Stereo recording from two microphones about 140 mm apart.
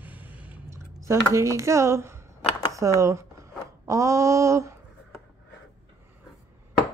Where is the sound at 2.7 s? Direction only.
20° right (ahead or behind).